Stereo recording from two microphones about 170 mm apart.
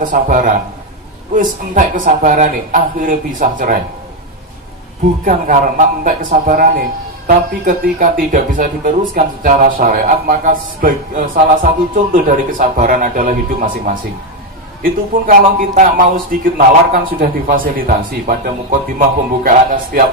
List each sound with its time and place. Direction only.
0.0 s speech: 50° right (ahead or behind)
5.2 s speech: 50° right (ahead or behind)